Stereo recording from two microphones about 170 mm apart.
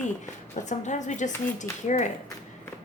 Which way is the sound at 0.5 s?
45° left (ahead or behind).